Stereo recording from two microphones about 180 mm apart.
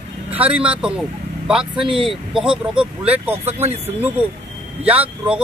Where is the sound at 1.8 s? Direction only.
30° right (ahead or behind).